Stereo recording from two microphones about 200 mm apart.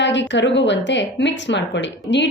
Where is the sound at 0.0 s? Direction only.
60° left (ahead or behind).